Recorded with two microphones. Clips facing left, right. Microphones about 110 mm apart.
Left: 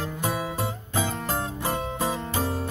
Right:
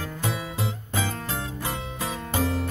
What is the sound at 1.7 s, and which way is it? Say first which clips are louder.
Music: left 5 dB; 25° left (ahead or behind).